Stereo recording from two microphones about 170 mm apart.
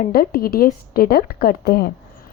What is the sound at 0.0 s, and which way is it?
Speech, 60° left (ahead or behind).